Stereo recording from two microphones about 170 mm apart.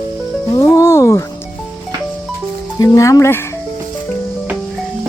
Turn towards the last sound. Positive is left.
turn(degrees=15)  # may be behind; listen again after turning